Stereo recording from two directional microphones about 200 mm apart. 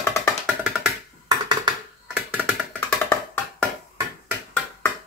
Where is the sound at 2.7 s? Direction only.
10° left (ahead or behind).